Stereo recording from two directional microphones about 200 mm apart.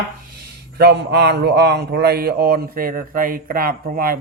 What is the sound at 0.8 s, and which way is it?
Speech, 55° right (ahead or behind).